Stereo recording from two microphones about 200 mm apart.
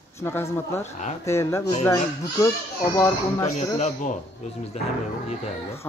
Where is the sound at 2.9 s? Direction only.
10° left (ahead or behind).